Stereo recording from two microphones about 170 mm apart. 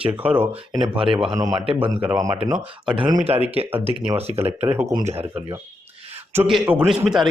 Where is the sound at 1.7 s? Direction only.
30° right (ahead or behind).